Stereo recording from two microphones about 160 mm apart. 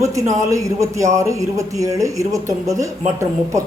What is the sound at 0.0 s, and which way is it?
Speech, 20° right (ahead or behind).